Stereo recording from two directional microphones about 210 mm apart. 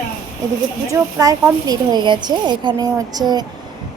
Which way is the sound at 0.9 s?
15° right (ahead or behind).